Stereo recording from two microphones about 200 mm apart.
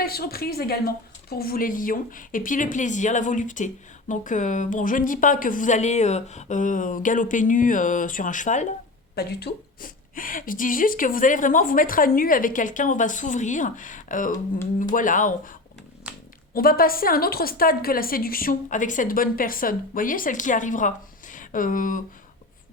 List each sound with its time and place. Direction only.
0.0 s a woman's voice: 50° left (ahead or behind)
9.1 s a woman's voice: 55° left (ahead or behind)
16.6 s a woman's voice: 45° left (ahead or behind)